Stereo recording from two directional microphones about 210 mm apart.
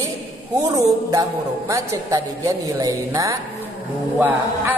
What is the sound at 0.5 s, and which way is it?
A man's voice, 15° right (ahead or behind).